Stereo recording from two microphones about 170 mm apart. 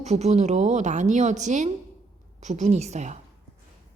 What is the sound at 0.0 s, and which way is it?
A woman's voice, 40° right (ahead or behind).